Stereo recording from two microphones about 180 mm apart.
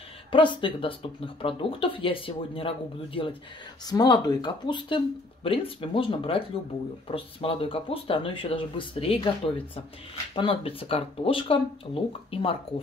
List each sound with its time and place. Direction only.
0.3 s speech: 25° left (ahead or behind)
10.3 s speech: 30° left (ahead or behind)